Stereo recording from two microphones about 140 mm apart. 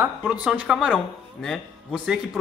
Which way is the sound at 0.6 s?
5° right (ahead or behind).